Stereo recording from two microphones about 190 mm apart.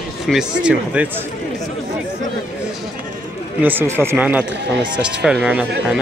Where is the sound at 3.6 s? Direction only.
10° right (ahead or behind).